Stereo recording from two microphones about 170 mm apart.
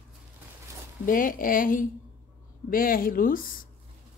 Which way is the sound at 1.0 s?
55° left (ahead or behind).